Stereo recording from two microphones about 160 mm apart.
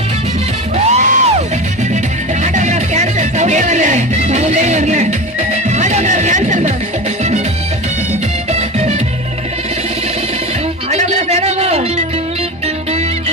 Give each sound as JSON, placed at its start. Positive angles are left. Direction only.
{"t": 0.9, "sound": "music", "side_deg": -50}
{"t": 2.4, "sound": "music", "side_deg": -50}
{"t": 8.5, "sound": "music", "side_deg": -45}
{"t": 10.9, "sound": "music", "side_deg": -45}